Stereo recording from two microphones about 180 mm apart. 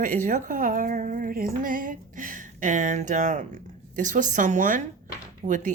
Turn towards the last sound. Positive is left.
turn(degrees=-45)  # may be behind; listen again after turning